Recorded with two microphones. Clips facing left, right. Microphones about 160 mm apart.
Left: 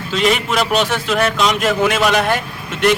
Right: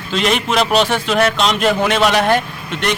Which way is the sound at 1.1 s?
35° right (ahead or behind).